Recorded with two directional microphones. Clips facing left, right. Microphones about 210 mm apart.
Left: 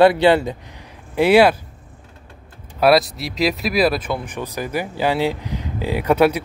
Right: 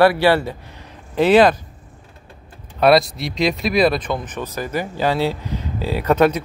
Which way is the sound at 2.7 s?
5° left (ahead or behind).